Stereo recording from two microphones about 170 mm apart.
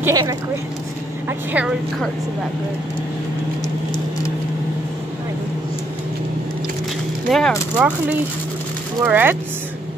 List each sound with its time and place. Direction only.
0.0 s speech: 20° right (ahead or behind)
7.2 s speech: centre (ahead or behind)
7.7 s speech: 10° right (ahead or behind)